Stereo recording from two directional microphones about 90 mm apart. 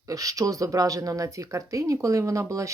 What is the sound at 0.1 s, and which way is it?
Speech, 40° right (ahead or behind).